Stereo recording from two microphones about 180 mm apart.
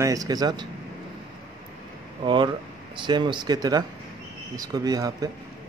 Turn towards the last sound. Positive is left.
turn(degrees=-20)  # may be behind; listen again after turning